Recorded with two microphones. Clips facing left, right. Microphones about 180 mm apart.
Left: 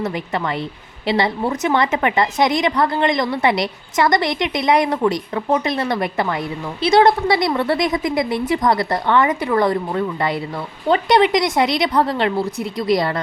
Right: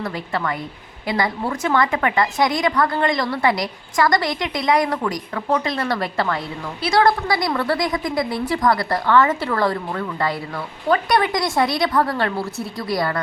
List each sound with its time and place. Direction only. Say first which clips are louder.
0.0 s a woman's voice: left 2 dB; 20° left (ahead or behind)